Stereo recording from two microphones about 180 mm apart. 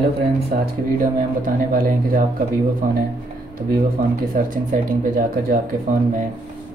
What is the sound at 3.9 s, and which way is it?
Speech, 50° right (ahead or behind).